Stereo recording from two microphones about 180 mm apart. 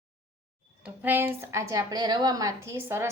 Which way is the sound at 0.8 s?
10° right (ahead or behind).